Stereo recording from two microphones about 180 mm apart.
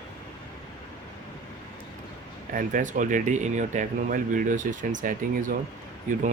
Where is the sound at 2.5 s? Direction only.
45° right (ahead or behind).